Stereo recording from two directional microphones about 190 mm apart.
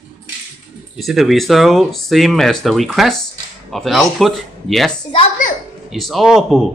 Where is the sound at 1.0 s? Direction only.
Centre (ahead or behind).